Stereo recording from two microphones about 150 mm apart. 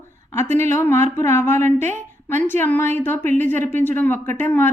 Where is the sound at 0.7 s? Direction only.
15° left (ahead or behind).